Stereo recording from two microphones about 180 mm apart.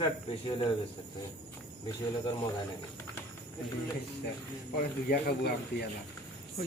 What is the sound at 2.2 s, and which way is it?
Speech, 20° left (ahead or behind).